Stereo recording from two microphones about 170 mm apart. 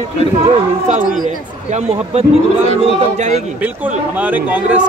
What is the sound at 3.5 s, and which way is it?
Speech, 10° right (ahead or behind).